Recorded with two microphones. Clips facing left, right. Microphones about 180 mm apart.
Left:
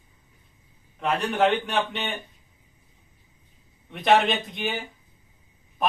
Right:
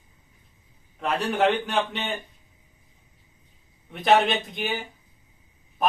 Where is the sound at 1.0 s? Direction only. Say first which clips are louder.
Even; centre (ahead or behind).